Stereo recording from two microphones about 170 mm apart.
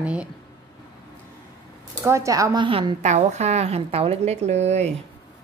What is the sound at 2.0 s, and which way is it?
A woman's voice, 15° right (ahead or behind).